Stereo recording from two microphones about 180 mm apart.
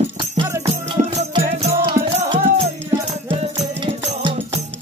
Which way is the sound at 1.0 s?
40° right (ahead or behind).